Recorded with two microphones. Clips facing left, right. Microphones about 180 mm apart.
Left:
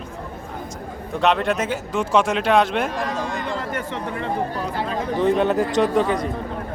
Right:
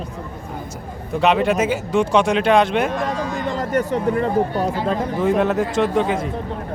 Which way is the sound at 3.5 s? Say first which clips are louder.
Right 6 dB; 40° right (ahead or behind).